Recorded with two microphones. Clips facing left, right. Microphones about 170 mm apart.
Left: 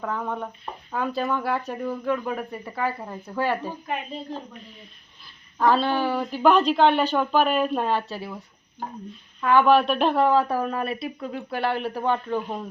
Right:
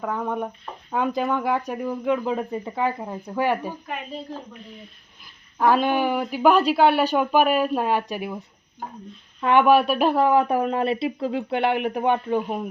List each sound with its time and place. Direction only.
0.0 s speech: 15° right (ahead or behind)
5.2 s speech: 10° right (ahead or behind)
9.6 s speech: 10° right (ahead or behind)
10.3 s speech: 20° right (ahead or behind)